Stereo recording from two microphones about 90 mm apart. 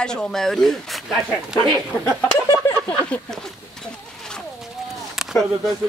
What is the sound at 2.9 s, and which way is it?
Speech, 10° left (ahead or behind).